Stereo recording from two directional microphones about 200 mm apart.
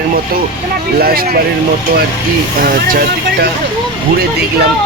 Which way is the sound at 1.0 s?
50° right (ahead or behind).